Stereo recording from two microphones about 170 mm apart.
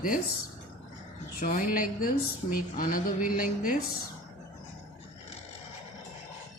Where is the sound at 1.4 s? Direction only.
55° left (ahead or behind).